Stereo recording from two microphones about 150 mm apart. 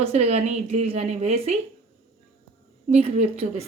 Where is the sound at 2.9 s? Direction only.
50° right (ahead or behind).